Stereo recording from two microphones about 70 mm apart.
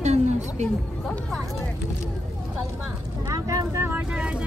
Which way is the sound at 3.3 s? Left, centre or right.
Right.